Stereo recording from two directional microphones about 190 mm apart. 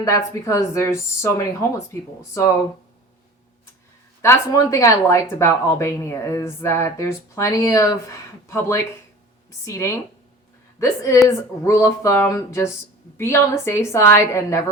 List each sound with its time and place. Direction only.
0.0 s speech: 15° left (ahead or behind)
4.2 s a woman's voice: 15° left (ahead or behind)